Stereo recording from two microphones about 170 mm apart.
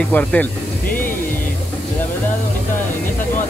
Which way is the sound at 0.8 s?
55° left (ahead or behind).